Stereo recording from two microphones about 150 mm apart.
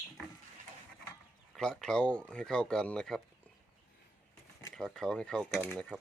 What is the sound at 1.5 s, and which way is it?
Speech, 5° left (ahead or behind).